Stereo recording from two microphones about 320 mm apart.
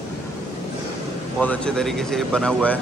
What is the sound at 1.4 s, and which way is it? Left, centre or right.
Speech, centre.